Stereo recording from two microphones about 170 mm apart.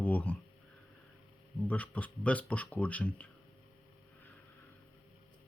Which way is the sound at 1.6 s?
10° left (ahead or behind).